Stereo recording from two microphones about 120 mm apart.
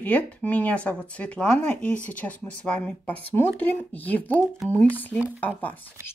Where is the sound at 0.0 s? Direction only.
15° left (ahead or behind).